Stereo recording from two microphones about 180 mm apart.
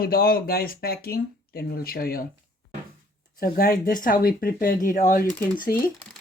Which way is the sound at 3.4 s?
60° left (ahead or behind).